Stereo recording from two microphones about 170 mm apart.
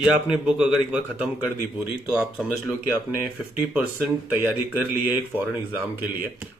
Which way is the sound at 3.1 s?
10° right (ahead or behind).